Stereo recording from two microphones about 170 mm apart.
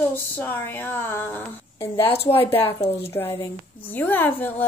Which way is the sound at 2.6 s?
35° left (ahead or behind).